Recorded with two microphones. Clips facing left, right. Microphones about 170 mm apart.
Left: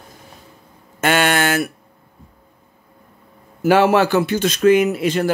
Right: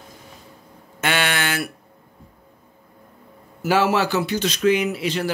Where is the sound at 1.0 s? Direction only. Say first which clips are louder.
Left 6 dB; 45° left (ahead or behind).